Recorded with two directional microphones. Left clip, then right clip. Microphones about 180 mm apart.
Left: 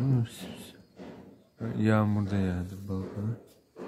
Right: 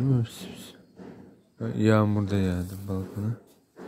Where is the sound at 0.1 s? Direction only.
15° right (ahead or behind).